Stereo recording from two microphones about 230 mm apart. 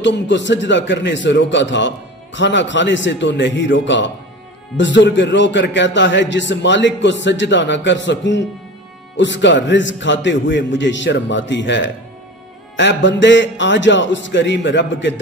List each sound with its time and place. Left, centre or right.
0.0 s a man's voice: left